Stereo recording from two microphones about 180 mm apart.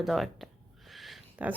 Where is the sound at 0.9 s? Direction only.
Centre (ahead or behind).